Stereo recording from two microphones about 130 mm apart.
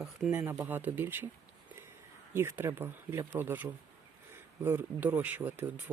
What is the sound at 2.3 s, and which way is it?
Speech, 20° right (ahead or behind).